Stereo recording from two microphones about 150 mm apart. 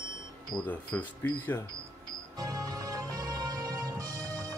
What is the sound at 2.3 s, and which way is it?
Music, 25° right (ahead or behind).